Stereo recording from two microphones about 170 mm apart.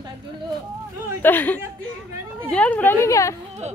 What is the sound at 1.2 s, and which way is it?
A woman's voice, 10° left (ahead or behind).